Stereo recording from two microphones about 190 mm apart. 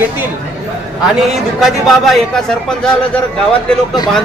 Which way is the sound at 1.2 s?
Centre (ahead or behind).